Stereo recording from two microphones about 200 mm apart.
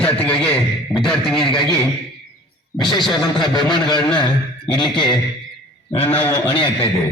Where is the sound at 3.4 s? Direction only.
20° left (ahead or behind).